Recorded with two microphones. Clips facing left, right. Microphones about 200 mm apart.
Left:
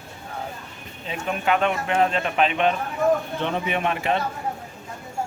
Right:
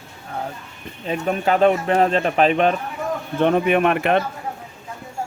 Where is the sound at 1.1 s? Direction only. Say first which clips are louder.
Right 4 dB; 40° right (ahead or behind).